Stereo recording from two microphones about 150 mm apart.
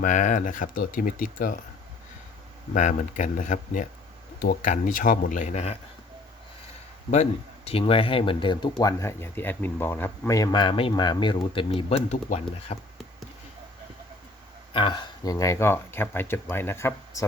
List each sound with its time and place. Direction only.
0.0 s speech: 55° left (ahead or behind)
2.7 s speech: 55° left (ahead or behind)
4.4 s speech: 80° left
4.7 s speech: 60° left (ahead or behind)
7.1 s speech: 45° left (ahead or behind)
14.7 s speech: 30° left (ahead or behind); by 17.2 s 15° left (ahead or behind)